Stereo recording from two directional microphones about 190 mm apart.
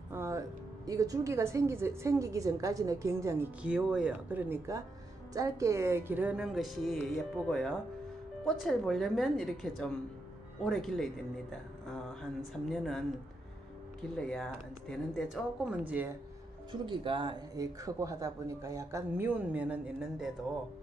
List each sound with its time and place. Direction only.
0.1 s speech: 15° right (ahead or behind)
14.1 s speech: 5° left (ahead or behind)
16.8 s speech: 25° right (ahead or behind); by 20.2 s 5° right (ahead or behind)